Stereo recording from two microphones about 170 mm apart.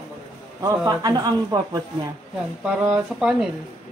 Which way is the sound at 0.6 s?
20° right (ahead or behind).